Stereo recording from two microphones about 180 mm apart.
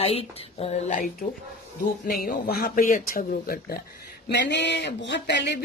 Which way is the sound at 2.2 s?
55° left (ahead or behind).